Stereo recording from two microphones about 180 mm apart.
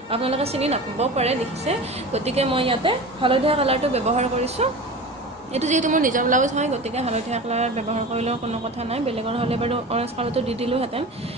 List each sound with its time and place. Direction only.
0.1 s a woman's voice: 30° right (ahead or behind)